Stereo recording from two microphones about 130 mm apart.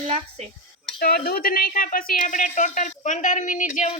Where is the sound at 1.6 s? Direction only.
90° left.